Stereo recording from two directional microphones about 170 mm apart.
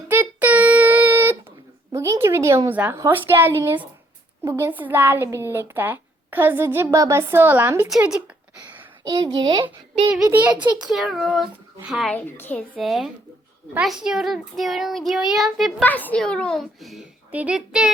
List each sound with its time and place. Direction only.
0.1 s a sound: 10° right (ahead or behind)
3.0 s a woman's voice: 10° right (ahead or behind)
9.0 s a child's voice: 20° right (ahead or behind)
10.2 s a woman's voice: 10° right (ahead or behind)
12.1 s a woman's voice: 10° left (ahead or behind)
12.7 s a child's voice: centre (ahead or behind)